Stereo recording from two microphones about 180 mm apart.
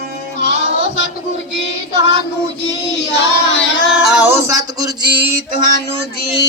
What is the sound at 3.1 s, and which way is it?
Child singing, 70° left (ahead or behind).